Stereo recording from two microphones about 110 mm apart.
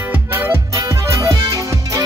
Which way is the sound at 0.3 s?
20° right (ahead or behind).